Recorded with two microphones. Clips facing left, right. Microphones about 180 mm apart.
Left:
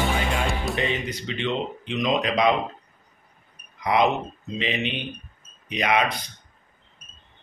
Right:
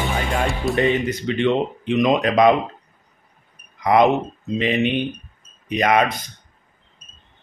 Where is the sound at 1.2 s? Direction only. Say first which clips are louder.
Right 9 dB; 55° right (ahead or behind).